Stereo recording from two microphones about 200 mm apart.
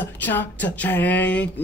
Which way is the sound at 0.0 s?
10° left (ahead or behind).